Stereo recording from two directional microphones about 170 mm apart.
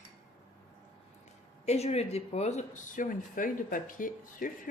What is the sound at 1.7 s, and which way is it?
Speech, 40° left (ahead or behind).